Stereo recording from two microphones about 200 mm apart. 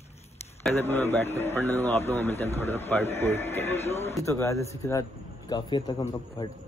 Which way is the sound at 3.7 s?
30° left (ahead or behind).